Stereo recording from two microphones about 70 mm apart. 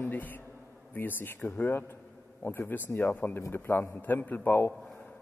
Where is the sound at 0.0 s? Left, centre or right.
Left.